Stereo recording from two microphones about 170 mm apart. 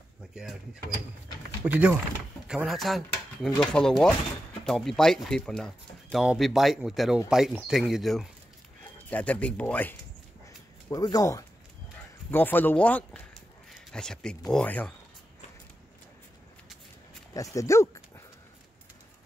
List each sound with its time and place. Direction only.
0.3 s speech: 5° right (ahead or behind)
1.6 s speech: 10° right (ahead or behind); by 9.9 s 10° left (ahead or behind)
10.9 s speech: 20° left (ahead or behind)
17.3 s dog: 20° left (ahead or behind)